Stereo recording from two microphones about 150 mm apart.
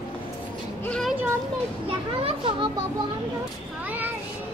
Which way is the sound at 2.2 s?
35° right (ahead or behind).